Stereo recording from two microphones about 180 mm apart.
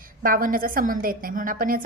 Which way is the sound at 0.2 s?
50° right (ahead or behind).